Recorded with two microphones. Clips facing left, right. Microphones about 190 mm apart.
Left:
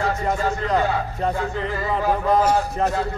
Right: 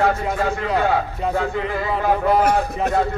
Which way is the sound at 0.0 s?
60° right (ahead or behind).